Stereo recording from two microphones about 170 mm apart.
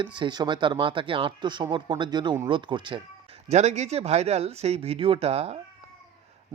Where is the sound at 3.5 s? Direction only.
40° right (ahead or behind).